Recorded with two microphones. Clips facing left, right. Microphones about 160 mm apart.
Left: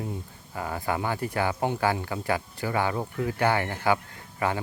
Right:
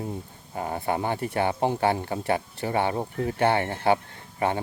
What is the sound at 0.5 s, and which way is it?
Speech, 30° right (ahead or behind).